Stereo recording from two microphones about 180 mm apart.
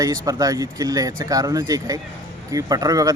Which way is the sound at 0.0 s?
20° right (ahead or behind).